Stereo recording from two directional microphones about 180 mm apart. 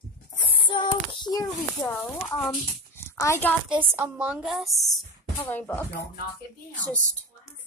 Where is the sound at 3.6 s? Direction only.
5° right (ahead or behind).